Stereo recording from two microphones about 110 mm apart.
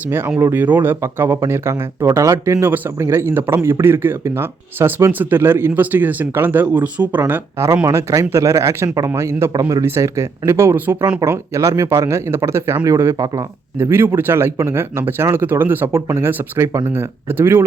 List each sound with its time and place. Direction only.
0.1 s speech: 20° right (ahead or behind)